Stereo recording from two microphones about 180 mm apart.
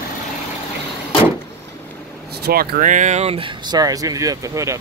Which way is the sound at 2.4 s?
60° right (ahead or behind).